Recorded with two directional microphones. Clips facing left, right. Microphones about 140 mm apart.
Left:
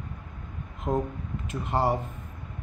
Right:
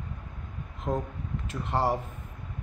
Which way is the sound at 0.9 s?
10° left (ahead or behind).